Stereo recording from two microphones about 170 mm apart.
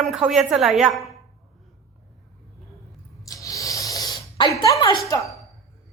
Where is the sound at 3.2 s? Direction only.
20° left (ahead or behind).